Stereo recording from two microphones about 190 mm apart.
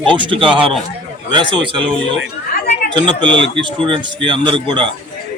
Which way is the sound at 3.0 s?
25° right (ahead or behind).